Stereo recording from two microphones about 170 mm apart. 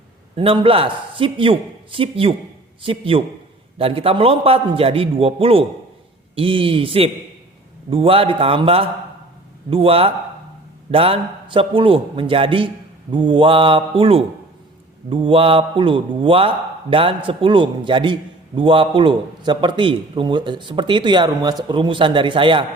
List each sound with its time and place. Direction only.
0.3 s a man's voice: 30° right (ahead or behind)